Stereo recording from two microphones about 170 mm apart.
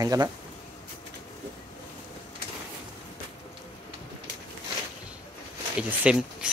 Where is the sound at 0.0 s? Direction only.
20° right (ahead or behind).